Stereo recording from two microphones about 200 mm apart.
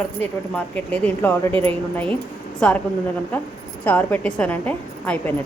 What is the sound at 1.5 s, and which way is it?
Speech, 25° right (ahead or behind).